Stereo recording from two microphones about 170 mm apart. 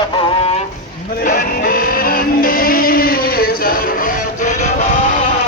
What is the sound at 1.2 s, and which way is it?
Music, 55° left (ahead or behind).